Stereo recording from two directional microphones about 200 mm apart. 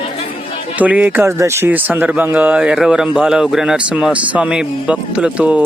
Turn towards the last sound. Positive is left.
turn(degrees=-5)  # may be behind; listen again after turning